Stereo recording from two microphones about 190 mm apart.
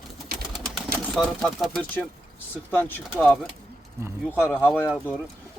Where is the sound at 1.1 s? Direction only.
Centre (ahead or behind).